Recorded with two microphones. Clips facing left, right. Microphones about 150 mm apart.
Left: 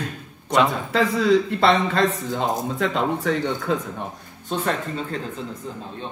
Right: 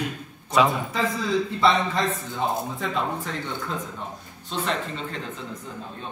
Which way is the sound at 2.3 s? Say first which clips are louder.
Left 3 dB; 85° left.